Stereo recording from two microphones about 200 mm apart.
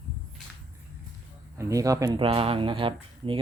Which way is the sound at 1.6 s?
15° right (ahead or behind).